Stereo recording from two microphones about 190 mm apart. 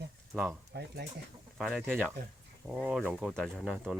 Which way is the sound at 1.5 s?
Centre (ahead or behind).